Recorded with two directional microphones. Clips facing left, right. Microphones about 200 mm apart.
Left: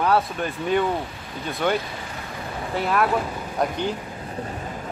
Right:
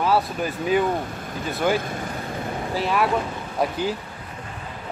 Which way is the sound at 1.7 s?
50° right (ahead or behind).